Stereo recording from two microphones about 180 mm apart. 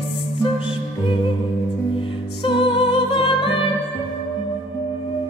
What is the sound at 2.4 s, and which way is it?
Music, 30° left (ahead or behind).